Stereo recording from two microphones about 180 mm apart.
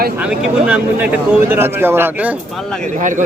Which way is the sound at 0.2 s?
5° right (ahead or behind).